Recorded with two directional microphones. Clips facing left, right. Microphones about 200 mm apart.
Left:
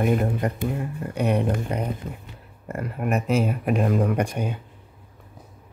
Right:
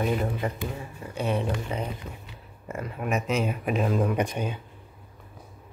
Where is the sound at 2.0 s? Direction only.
50° left (ahead or behind).